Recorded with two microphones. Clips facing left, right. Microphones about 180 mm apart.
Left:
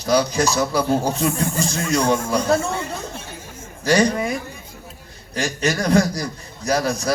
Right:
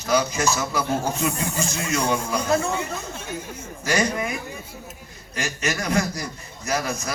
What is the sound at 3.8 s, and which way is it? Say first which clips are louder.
A man's voice: left 6 dB; 35° left (ahead or behind).